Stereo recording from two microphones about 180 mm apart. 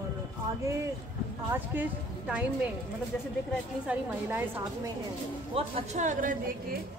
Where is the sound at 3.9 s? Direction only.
10° right (ahead or behind).